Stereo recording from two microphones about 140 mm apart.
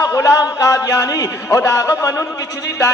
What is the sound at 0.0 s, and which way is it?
A man's voice, 20° left (ahead or behind).